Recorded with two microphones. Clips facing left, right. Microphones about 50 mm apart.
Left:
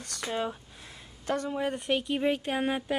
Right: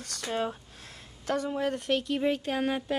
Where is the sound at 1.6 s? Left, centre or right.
Centre.